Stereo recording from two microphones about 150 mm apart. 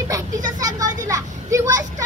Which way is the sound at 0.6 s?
25° right (ahead or behind).